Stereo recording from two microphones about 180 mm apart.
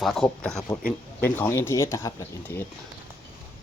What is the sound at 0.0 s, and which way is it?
Speech, centre (ahead or behind).